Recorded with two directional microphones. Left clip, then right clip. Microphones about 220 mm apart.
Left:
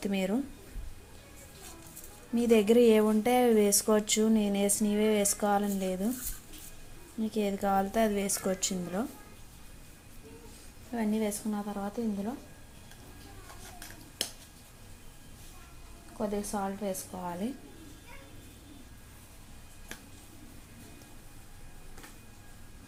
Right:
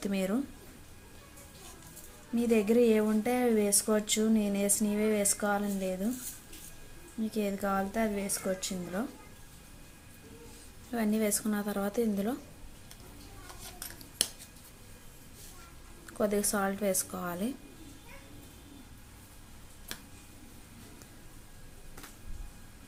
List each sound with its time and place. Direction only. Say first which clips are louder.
0.0 s a woman's voice: left 1 dB; centre (ahead or behind)
2.3 s speech: left 3 dB; 10° left (ahead or behind)
7.2 s a woman's voice: left 2 dB; centre (ahead or behind)
10.9 s a woman's voice: right 1 dB; 10° right (ahead or behind)
16.1 s a woman's voice: right 4 dB; 20° right (ahead or behind)